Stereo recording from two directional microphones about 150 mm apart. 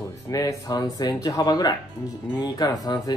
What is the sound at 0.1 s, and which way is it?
Speech, 20° left (ahead or behind).